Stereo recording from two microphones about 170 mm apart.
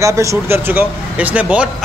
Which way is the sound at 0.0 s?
15° right (ahead or behind).